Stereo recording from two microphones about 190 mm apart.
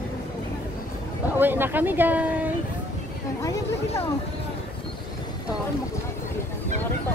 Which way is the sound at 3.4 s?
15° left (ahead or behind).